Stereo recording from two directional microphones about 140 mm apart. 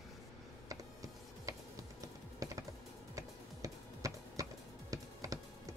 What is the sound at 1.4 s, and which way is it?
Typing, 25° right (ahead or behind).